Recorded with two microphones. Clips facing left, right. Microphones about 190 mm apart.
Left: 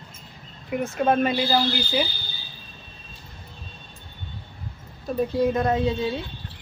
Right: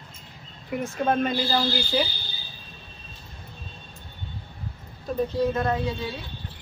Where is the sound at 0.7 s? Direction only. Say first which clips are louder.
Left 3 dB; centre (ahead or behind).